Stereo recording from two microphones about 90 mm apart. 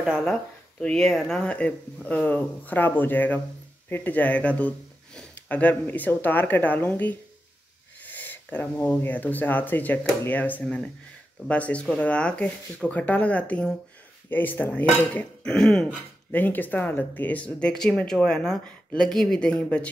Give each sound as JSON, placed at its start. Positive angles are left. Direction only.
{"t": 0.2, "sound": "speech", "side_deg": 10}
{"t": 1.4, "sound": "speech", "side_deg": 15}
{"t": 10.6, "sound": "speech", "side_deg": 10}
{"t": 16.3, "sound": "speech", "side_deg": 20}